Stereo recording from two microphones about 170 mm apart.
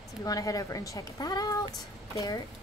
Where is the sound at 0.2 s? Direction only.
20° left (ahead or behind).